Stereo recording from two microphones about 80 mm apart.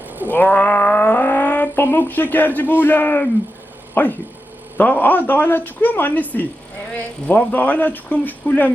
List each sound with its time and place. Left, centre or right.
0.3 s speech: left